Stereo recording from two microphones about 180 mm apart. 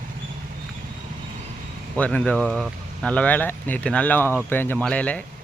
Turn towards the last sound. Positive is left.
turn(degrees=5)  # may be behind; listen again after turning